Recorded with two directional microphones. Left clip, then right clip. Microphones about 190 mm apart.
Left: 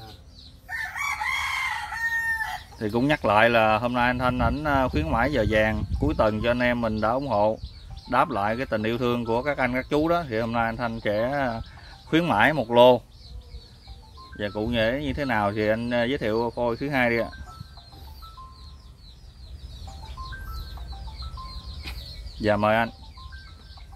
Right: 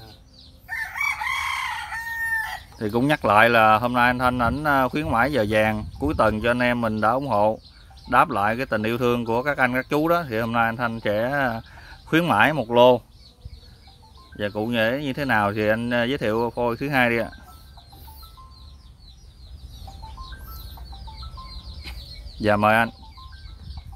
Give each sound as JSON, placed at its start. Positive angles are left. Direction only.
{"t": 0.7, "sound": "chicken", "side_deg": -50}
{"t": 2.8, "sound": "speech", "side_deg": -20}
{"t": 14.3, "sound": "speech", "side_deg": -25}
{"t": 21.9, "sound": "chicken", "side_deg": 15}
{"t": 22.4, "sound": "speech", "side_deg": -30}